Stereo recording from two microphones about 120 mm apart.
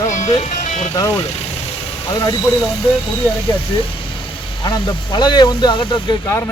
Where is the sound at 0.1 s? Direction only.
80° left.